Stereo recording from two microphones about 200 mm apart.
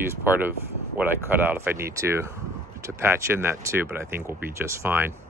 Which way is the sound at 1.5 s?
10° right (ahead or behind).